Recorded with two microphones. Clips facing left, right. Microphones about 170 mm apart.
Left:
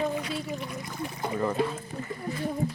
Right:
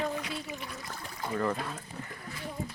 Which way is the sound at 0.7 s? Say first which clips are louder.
Left 7 dB; 20° left (ahead or behind).